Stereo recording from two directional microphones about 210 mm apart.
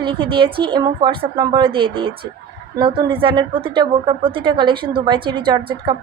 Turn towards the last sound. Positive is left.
turn(degrees=-20)  # may be behind; listen again after turning